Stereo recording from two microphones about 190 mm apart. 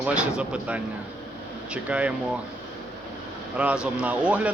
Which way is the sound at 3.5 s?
5° right (ahead or behind).